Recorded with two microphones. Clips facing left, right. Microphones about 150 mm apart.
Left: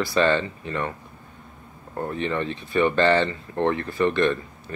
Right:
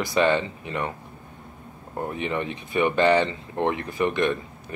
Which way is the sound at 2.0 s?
15° right (ahead or behind).